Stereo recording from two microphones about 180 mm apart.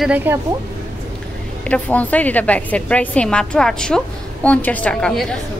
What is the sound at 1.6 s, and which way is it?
A woman's voice, 5° left (ahead or behind).